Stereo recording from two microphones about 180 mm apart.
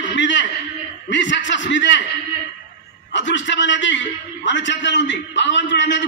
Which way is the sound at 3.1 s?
90° left.